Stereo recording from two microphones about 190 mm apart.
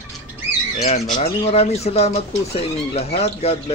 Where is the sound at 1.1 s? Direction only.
35° left (ahead or behind).